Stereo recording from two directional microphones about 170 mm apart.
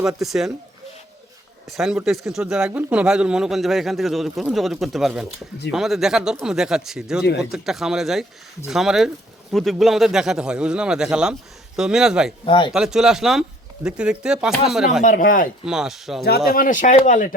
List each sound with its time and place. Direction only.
0.2 s speech: centre (ahead or behind)
1.7 s speech: centre (ahead or behind)
12.5 s speech: 30° left (ahead or behind)
12.7 s speech: 5° right (ahead or behind)
15.0 s speech: 50° left (ahead or behind)
15.6 s speech: 5° right (ahead or behind)
16.5 s speech: 55° left (ahead or behind)